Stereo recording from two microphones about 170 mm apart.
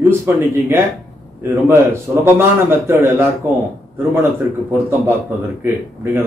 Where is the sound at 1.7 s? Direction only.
15° right (ahead or behind).